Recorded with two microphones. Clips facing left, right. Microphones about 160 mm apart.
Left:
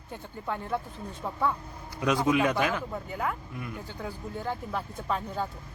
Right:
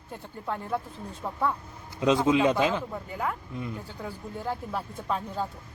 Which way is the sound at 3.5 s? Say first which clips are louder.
Right 3 dB; 25° right (ahead or behind).